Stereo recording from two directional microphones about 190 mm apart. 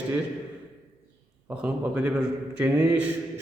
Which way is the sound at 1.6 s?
5° right (ahead or behind).